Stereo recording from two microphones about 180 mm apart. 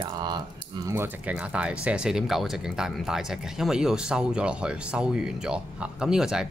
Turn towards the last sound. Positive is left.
turn(degrees=-5)  # may be behind; listen again after turning